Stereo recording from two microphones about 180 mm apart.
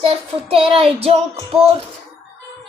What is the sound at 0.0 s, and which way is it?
Child singing, 30° right (ahead or behind).